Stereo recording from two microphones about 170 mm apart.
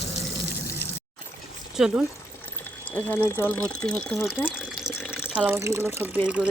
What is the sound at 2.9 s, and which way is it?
Speech, 10° left (ahead or behind).